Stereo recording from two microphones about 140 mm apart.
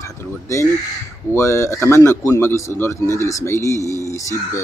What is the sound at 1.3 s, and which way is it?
Speech, 20° left (ahead or behind).